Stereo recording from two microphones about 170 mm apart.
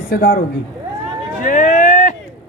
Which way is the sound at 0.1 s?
70° left (ahead or behind).